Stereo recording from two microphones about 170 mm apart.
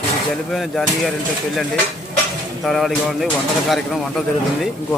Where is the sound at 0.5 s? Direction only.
Centre (ahead or behind).